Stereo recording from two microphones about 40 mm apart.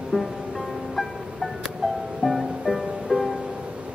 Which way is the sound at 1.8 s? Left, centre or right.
Centre.